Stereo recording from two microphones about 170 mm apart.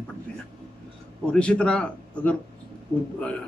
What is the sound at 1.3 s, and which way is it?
A man's voice, 5° left (ahead or behind).